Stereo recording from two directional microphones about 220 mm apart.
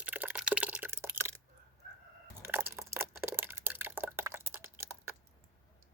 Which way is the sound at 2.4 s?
10° right (ahead or behind).